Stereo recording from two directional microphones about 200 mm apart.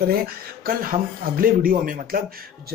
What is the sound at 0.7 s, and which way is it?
Speech, 45° right (ahead or behind).